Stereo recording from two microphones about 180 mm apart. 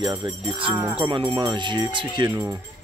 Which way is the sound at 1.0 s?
30° right (ahead or behind).